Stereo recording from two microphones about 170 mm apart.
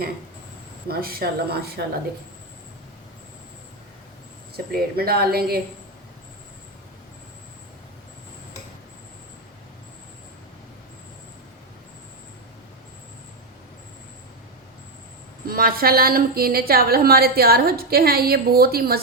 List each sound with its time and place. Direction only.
0.9 s speech: 65° right (ahead or behind)
4.5 s a woman's voice: 60° right (ahead or behind)
15.4 s a woman's voice: 60° right (ahead or behind)